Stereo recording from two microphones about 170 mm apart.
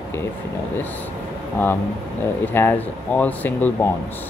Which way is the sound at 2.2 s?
10° left (ahead or behind).